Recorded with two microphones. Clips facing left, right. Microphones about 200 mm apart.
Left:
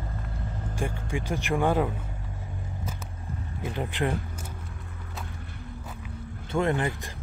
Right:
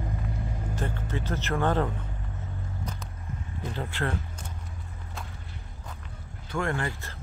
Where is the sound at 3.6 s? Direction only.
15° left (ahead or behind).